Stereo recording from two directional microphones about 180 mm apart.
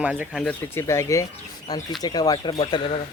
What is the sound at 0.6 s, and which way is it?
Speech, 15° left (ahead or behind).